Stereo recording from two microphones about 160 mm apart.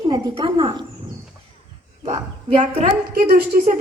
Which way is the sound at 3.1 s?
70° right (ahead or behind).